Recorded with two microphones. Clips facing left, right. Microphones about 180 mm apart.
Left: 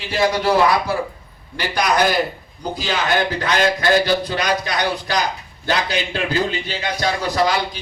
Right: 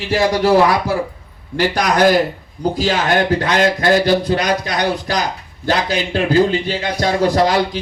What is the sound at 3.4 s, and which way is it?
A man's voice, 50° right (ahead or behind).